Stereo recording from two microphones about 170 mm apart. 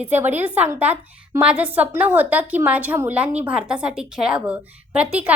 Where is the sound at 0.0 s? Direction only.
10° right (ahead or behind).